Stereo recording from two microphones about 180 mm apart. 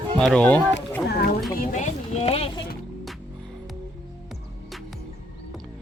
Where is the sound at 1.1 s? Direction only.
60° left (ahead or behind).